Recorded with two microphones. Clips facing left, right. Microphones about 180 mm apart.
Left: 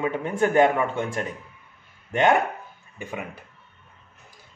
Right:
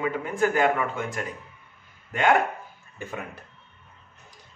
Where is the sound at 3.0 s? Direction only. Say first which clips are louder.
Left 2 dB; 10° left (ahead or behind).